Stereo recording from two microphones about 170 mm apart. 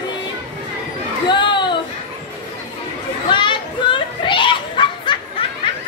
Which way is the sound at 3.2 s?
30° left (ahead or behind).